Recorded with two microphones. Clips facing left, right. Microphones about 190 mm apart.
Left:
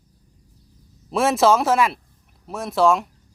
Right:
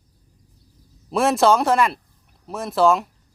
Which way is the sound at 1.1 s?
Centre (ahead or behind).